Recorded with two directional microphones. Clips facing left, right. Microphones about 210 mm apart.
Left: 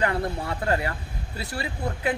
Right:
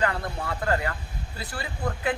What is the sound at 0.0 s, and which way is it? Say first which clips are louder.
Speech: left 2 dB; 25° left (ahead or behind).